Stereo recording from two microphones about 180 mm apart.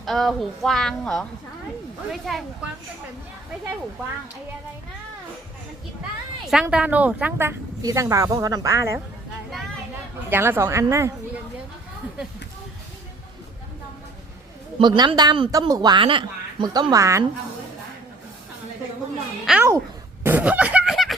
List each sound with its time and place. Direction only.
0.0 s speech: centre (ahead or behind)
2.3 s speech: centre (ahead or behind)
6.5 s a woman's voice: 5° right (ahead or behind)
10.2 s a woman's voice: 10° right (ahead or behind)
14.8 s speech: 25° right (ahead or behind)
19.5 s a woman's voice: 10° right (ahead or behind)
20.2 s a sound: 10° right (ahead or behind)